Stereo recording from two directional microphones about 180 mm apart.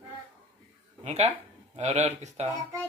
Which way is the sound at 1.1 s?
35° right (ahead or behind).